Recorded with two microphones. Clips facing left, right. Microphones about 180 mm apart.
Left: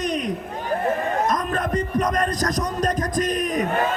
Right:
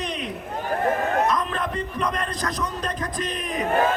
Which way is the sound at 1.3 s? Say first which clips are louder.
Left 2 dB; 45° left (ahead or behind).